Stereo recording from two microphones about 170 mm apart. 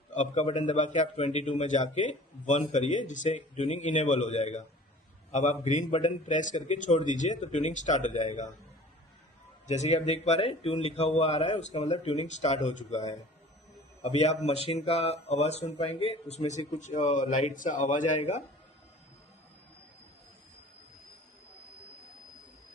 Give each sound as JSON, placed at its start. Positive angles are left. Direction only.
{"t": 0.1, "sound": "a man's voice", "side_deg": 45}
{"t": 9.6, "sound": "a man's voice", "side_deg": 40}
{"t": 14.0, "sound": "a man's voice", "side_deg": 40}